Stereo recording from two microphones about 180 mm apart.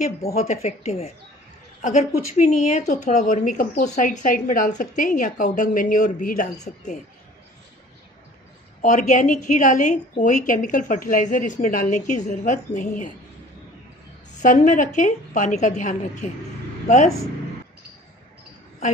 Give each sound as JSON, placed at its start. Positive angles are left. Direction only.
{"t": 0.0, "sound": "a woman's voice", "side_deg": 35}
{"t": 8.8, "sound": "a woman's voice", "side_deg": 45}
{"t": 14.4, "sound": "a woman's voice", "side_deg": 45}